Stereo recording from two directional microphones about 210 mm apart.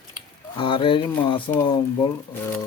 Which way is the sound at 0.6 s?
25° left (ahead or behind).